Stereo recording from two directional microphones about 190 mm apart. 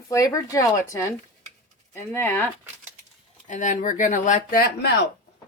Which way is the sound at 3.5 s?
40° left (ahead or behind).